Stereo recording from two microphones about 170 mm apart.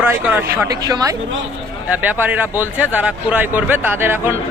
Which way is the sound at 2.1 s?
10° right (ahead or behind).